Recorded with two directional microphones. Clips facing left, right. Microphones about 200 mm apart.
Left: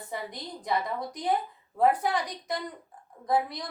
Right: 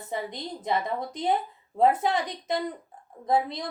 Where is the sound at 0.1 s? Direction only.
20° right (ahead or behind).